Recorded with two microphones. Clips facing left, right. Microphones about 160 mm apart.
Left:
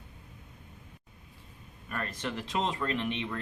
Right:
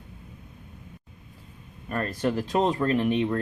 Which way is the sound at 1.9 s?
40° right (ahead or behind).